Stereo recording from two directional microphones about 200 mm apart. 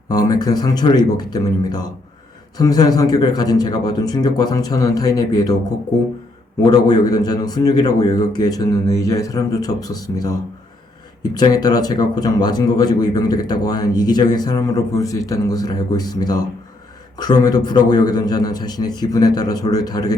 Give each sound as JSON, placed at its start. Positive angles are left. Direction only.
{"t": 0.1, "sound": "speech", "side_deg": 20}
{"t": 6.7, "sound": "speech", "side_deg": 20}